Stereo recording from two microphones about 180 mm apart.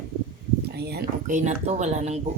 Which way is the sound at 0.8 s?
65° right (ahead or behind).